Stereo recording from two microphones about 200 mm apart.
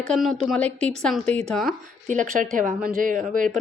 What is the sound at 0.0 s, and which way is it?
A woman's voice, centre (ahead or behind).